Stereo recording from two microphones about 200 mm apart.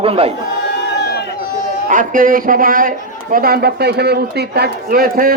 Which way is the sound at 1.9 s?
40° right (ahead or behind).